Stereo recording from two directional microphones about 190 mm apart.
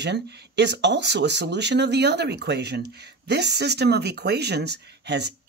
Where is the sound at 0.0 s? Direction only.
65° right (ahead or behind).